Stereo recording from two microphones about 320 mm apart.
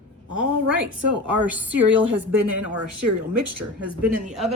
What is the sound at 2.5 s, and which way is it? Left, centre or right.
Speech, right.